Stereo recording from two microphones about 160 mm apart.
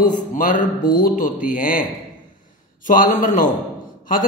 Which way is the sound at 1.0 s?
55° left (ahead or behind).